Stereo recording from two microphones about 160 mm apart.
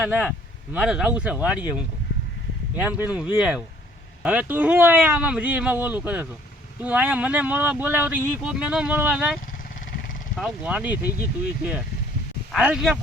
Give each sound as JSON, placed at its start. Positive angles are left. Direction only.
{"t": 0.0, "sound": "speech", "side_deg": -10}
{"t": 2.7, "sound": "speech", "side_deg": -10}
{"t": 12.5, "sound": "speech", "side_deg": -5}